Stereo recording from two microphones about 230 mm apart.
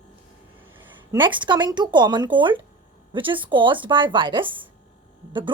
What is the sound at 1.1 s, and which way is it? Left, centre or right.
Speech, right.